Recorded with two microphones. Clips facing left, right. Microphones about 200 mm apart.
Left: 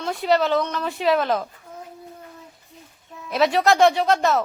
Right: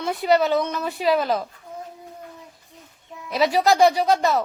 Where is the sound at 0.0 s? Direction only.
5° right (ahead or behind).